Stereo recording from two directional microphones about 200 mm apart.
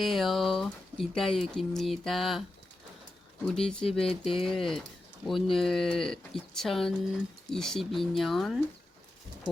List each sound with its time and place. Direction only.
0.0 s speech: centre (ahead or behind)
3.4 s speech: 5° left (ahead or behind)